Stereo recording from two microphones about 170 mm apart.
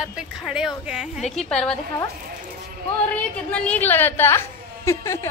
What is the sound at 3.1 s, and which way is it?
A woman's voice, 5° left (ahead or behind).